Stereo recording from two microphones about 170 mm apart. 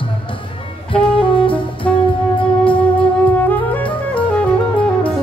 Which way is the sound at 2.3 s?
30° left (ahead or behind).